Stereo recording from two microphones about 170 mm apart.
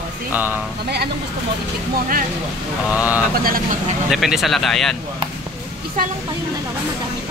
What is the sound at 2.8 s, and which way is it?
Speech, 10° right (ahead or behind).